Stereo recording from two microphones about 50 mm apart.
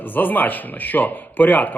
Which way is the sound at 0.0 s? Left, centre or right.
Left.